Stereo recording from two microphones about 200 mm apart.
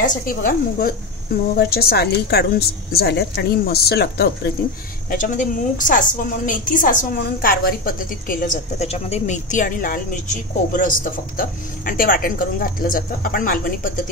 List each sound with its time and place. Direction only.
0.0 s a woman's voice: 45° left (ahead or behind)
5.1 s a woman's voice: 40° left (ahead or behind)